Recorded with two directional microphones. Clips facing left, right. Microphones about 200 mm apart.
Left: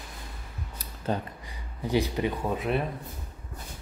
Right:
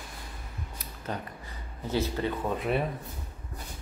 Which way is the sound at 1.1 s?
30° left (ahead or behind).